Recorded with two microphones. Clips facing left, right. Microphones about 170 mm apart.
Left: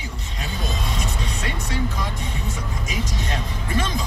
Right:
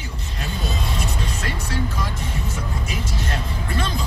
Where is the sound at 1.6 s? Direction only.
15° left (ahead or behind).